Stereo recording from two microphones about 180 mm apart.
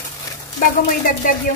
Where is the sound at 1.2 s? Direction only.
45° left (ahead or behind).